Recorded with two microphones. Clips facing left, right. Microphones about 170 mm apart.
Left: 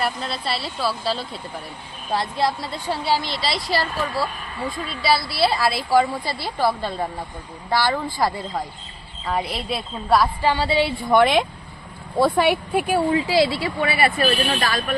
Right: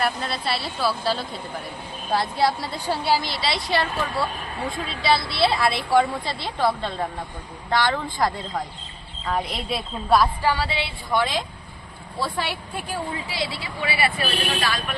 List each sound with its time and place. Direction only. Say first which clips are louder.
0.0 s a woman's voice: even; centre (ahead or behind)
10.4 s speech: left 2 dB; 25° left (ahead or behind)
10.7 s a woman's voice: left 9 dB; 40° left (ahead or behind)
11.1 s speech: left 7 dB; 60° left (ahead or behind); by 14.9 s 45° left (ahead or behind)